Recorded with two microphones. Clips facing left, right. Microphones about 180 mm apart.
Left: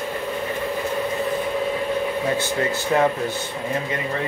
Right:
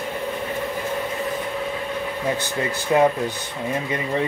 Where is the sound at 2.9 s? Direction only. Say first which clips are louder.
Right 2 dB; 20° right (ahead or behind).